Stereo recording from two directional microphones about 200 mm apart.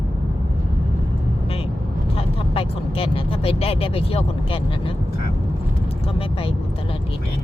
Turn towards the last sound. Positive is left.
turn(degrees=25)  # may be behind; listen again after turning